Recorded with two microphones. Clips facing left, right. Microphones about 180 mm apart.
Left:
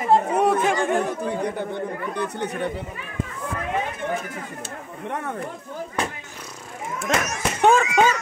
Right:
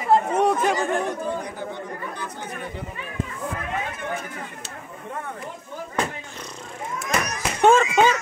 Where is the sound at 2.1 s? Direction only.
65° left (ahead or behind).